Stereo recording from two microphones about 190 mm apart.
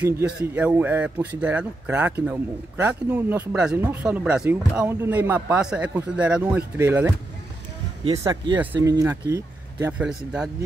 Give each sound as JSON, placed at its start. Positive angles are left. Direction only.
{"t": 0.0, "sound": "speech", "side_deg": -10}
{"t": 8.2, "sound": "speech", "side_deg": -25}